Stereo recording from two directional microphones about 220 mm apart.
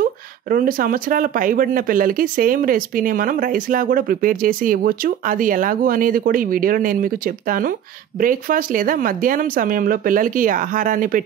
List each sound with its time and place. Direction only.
0.0 s speech: 40° right (ahead or behind)